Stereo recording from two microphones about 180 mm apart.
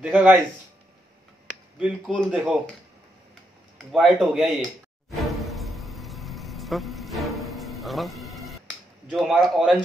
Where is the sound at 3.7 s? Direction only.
Centre (ahead or behind).